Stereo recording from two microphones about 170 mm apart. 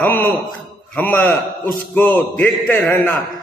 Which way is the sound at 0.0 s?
10° left (ahead or behind).